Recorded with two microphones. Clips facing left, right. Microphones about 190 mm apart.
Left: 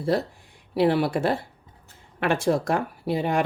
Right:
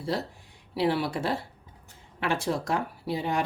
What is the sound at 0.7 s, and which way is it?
Speech, 55° left (ahead or behind).